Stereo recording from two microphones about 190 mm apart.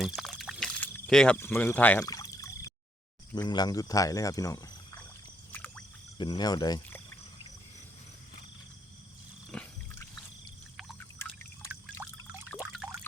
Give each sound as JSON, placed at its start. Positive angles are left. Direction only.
{"t": 0.0, "sound": "pour", "side_deg": 0}
{"t": 3.3, "sound": "speech", "side_deg": 20}
{"t": 5.5, "sound": "a sound", "side_deg": 5}
{"t": 6.1, "sound": "speech", "side_deg": 25}
{"t": 9.5, "sound": "a sound", "side_deg": 5}
{"t": 11.2, "sound": "drip", "side_deg": 10}
{"t": 11.7, "sound": "pour", "side_deg": -10}